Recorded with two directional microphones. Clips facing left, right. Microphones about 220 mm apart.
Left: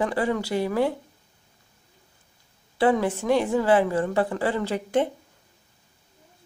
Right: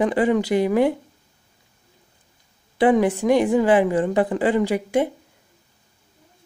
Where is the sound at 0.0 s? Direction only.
15° right (ahead or behind).